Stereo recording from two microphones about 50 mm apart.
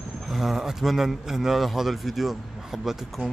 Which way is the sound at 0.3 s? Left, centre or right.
Centre.